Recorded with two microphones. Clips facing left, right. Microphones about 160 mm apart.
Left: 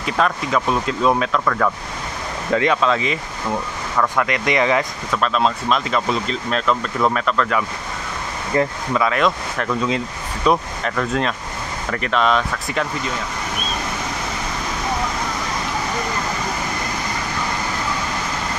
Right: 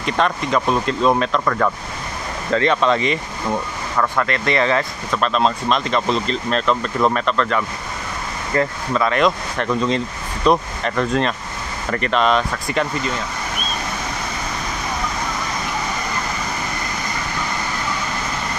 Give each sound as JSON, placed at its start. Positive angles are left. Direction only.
{"t": 0.0, "sound": "speech", "side_deg": 5}
{"t": 1.4, "sound": "speech", "side_deg": -10}
{"t": 2.5, "sound": "speech", "side_deg": 10}
{"t": 4.3, "sound": "speech", "side_deg": 15}
{"t": 5.1, "sound": "speech", "side_deg": 0}